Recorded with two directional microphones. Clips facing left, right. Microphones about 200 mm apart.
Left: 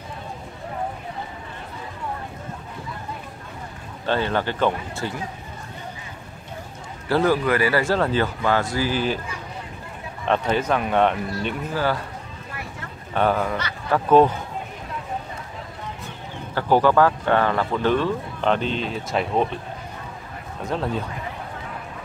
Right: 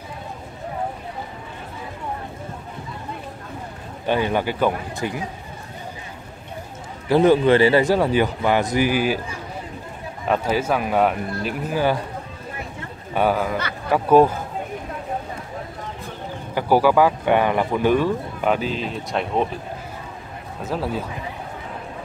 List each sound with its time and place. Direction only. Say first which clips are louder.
4.0 s speech: right 2 dB; 15° right (ahead or behind)
7.1 s speech: right 5 dB; 20° right (ahead or behind)
10.2 s speech: right 1 dB; 5° right (ahead or behind)
11.7 s speech: right 4 dB; 15° right (ahead or behind)
13.1 s speech: right 1 dB; 10° right (ahead or behind)
16.5 s speech: right 1 dB; 10° right (ahead or behind)
20.6 s speech: even; 5° right (ahead or behind)